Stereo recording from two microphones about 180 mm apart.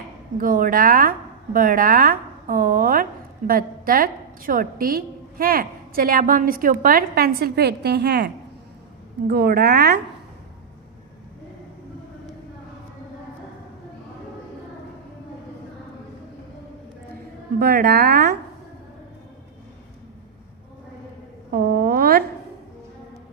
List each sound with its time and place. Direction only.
0.3 s speech: 50° right (ahead or behind)
9.3 s speech: 60° right (ahead or behind)
17.6 s speech: 60° right (ahead or behind)
21.5 s speech: 55° right (ahead or behind)